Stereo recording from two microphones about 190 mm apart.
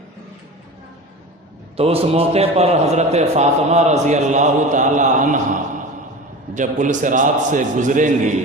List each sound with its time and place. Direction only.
1.7 s a man's voice: 30° right (ahead or behind)
6.5 s a man's voice: 40° right (ahead or behind)